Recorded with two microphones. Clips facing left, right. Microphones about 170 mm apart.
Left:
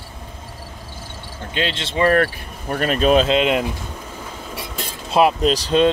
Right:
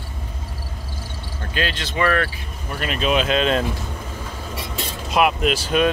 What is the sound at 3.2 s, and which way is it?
Speech, 20° left (ahead or behind).